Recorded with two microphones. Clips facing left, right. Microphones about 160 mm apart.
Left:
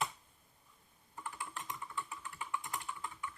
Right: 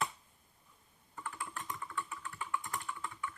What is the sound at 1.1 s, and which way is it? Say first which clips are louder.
Computer keyboard: right 1 dB; 20° left (ahead or behind).